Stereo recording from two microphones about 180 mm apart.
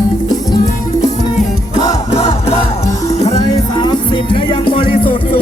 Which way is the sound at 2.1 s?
35° left (ahead or behind).